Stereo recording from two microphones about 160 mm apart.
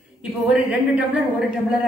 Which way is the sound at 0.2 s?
5° right (ahead or behind).